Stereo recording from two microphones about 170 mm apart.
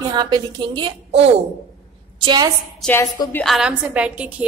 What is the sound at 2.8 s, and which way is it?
A woman's voice, 5° left (ahead or behind).